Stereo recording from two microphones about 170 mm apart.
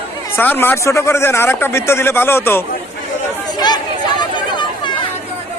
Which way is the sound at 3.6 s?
25° left (ahead or behind).